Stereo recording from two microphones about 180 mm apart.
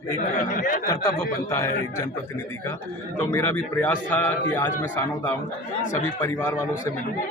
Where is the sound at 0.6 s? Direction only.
50° left (ahead or behind).